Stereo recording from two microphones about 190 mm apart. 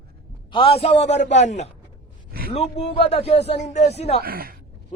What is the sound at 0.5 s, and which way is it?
Speech, 30° left (ahead or behind).